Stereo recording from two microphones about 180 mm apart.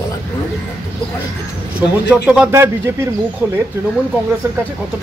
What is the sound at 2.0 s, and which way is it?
Speech, 5° right (ahead or behind).